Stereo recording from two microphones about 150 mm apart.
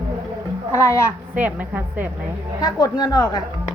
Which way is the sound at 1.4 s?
10° right (ahead or behind).